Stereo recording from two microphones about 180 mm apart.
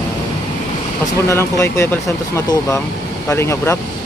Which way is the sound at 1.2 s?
15° left (ahead or behind).